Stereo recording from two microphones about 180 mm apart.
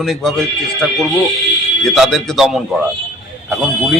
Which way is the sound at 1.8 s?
Centre (ahead or behind).